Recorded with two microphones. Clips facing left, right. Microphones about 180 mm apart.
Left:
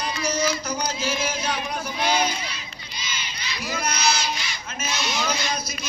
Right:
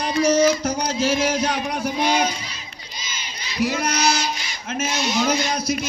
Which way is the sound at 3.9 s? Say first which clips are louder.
Right 3 dB; 45° right (ahead or behind).